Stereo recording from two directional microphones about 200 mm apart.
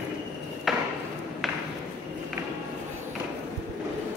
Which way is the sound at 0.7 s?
Centre (ahead or behind).